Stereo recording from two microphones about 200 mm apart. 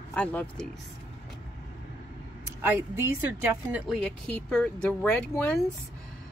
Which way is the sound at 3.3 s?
5° right (ahead or behind).